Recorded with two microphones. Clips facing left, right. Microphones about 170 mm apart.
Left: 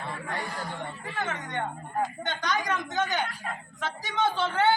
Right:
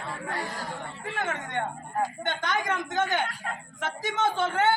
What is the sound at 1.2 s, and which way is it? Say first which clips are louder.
A woman's voice: right 1 dB; 50° right (ahead or behind).